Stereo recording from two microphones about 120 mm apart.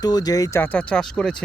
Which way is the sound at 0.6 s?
10° left (ahead or behind).